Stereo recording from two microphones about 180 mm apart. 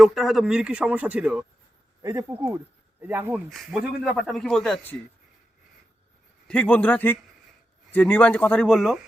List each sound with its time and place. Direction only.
0.0 s a man's voice: centre (ahead or behind)
2.0 s speech: 20° right (ahead or behind)
3.5 s a man's voice: centre (ahead or behind)
6.5 s speech: 5° left (ahead or behind)